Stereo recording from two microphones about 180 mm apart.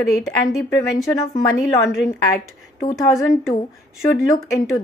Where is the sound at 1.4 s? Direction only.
15° left (ahead or behind).